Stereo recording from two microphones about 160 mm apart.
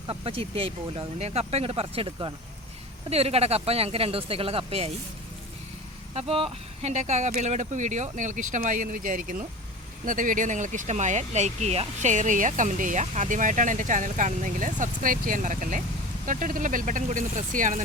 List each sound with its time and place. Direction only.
0.1 s speech: 35° right (ahead or behind)
6.1 s speech: 35° right (ahead or behind); by 17.8 s 55° right (ahead or behind)